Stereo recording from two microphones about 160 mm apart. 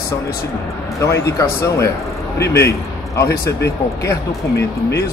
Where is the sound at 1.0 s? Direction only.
20° left (ahead or behind).